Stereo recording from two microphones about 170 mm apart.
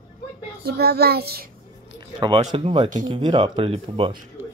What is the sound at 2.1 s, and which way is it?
Speech, 30° right (ahead or behind).